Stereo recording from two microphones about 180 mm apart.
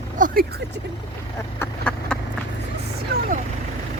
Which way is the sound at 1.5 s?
5° left (ahead or behind).